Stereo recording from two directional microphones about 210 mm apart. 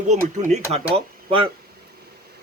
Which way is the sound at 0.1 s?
35° right (ahead or behind).